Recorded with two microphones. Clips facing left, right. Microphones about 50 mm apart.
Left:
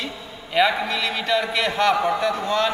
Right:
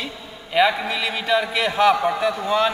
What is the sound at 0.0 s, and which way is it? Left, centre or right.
A man's voice, centre.